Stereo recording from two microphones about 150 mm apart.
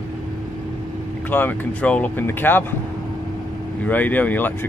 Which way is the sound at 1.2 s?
10° left (ahead or behind).